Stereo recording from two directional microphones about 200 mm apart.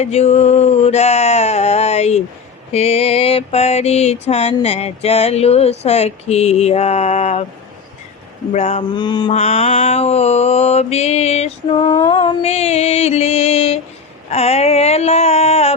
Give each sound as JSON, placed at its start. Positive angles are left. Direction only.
{"t": 0.0, "sound": "a sound", "side_deg": 30}
{"t": 2.7, "sound": "mantra", "side_deg": 30}
{"t": 8.5, "sound": "mantra", "side_deg": 35}
{"t": 8.9, "sound": "mantra", "side_deg": 20}
{"t": 9.3, "sound": "mantra", "side_deg": 35}